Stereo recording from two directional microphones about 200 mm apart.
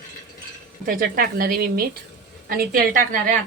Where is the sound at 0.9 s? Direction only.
45° right (ahead or behind).